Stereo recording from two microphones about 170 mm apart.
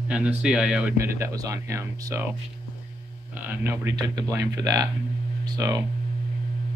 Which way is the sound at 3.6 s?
15° right (ahead or behind).